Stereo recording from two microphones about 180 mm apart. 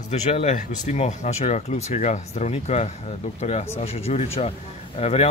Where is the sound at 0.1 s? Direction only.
40° left (ahead or behind).